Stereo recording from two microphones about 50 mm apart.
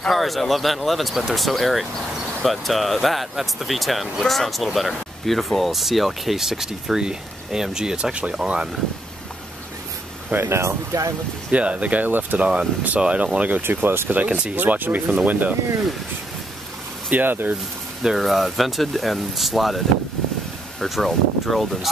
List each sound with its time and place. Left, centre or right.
0.1 s speech: centre; by 8.4 s right
10.3 s speech: right
11.5 s speech: right
12.1 s speech: right
12.4 s speech: right
13.6 s speech: right
14.0 s speech: right
17.1 s speech: right
18.0 s speech: centre
20.8 s speech: centre